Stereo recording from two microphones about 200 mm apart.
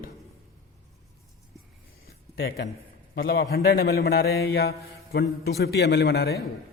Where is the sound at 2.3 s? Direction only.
50° left (ahead or behind).